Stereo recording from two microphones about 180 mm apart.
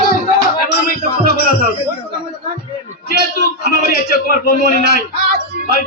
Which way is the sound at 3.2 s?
55° left (ahead or behind).